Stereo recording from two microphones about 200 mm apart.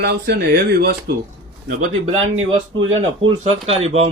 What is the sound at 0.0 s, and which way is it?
Speech, 55° right (ahead or behind).